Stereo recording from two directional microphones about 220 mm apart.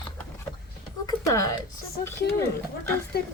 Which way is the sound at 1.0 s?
15° left (ahead or behind).